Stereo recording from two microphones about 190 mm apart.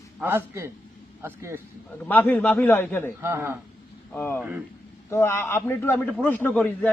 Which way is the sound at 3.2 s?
15° right (ahead or behind).